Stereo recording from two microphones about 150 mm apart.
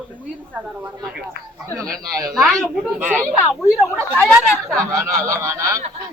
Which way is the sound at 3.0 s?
10° right (ahead or behind).